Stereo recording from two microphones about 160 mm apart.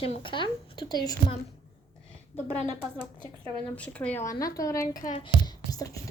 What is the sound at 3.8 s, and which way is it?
Speech, 10° left (ahead or behind).